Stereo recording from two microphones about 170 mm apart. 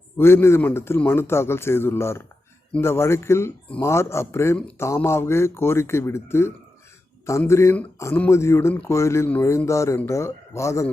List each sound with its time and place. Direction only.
0.2 s speech: 15° left (ahead or behind)